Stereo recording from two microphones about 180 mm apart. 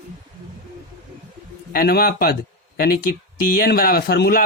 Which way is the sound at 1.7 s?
60° left (ahead or behind).